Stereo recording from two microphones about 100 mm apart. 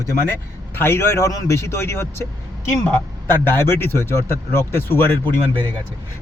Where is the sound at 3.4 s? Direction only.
20° left (ahead or behind).